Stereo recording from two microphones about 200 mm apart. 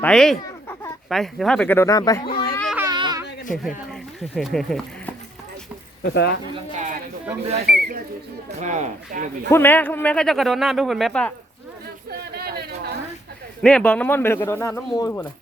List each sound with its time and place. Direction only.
0.0 s chicken: 5° left (ahead or behind)
1.1 s a man's voice: centre (ahead or behind); by 2.3 s 20° left (ahead or behind)
2.3 s baby cry: 45° left (ahead or behind)
2.7 s a sound: 20° right (ahead or behind)
3.9 s a sound: centre (ahead or behind)
6.0 s speech: 55° left (ahead or behind)
6.7 s a sound: 40° right (ahead or behind)
7.7 s speech: 45° right (ahead or behind)
8.4 s speech: 35° right (ahead or behind)
9.5 s speech: 10° left (ahead or behind)
12.3 s chatter: 55° right (ahead or behind)
13.6 s a man's voice: 5° left (ahead or behind)